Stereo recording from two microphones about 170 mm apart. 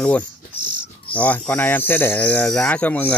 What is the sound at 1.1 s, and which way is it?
Speech, 10° left (ahead or behind).